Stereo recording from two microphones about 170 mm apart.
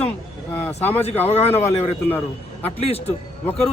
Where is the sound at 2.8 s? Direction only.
35° left (ahead or behind).